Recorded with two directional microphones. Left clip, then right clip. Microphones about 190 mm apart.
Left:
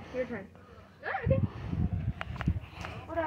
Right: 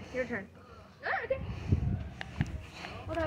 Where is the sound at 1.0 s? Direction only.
35° left (ahead or behind).